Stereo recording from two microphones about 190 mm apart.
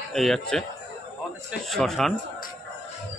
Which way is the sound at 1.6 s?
Centre (ahead or behind).